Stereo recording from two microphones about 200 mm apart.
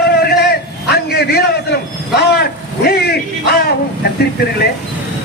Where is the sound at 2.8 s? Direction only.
50° left (ahead or behind).